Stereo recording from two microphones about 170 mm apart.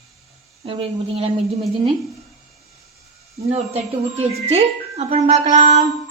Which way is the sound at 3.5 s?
40° right (ahead or behind).